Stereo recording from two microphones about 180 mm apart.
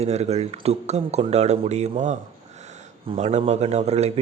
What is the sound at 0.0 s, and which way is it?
A man's voice, 35° right (ahead or behind).